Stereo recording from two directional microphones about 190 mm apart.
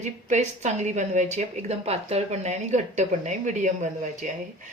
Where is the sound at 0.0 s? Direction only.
35° right (ahead or behind).